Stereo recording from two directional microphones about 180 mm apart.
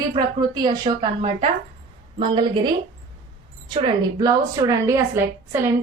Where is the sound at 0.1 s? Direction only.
25° right (ahead or behind).